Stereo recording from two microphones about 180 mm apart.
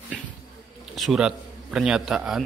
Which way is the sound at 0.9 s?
Centre (ahead or behind).